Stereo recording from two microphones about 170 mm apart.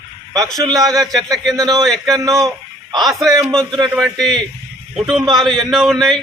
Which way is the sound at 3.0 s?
Centre (ahead or behind).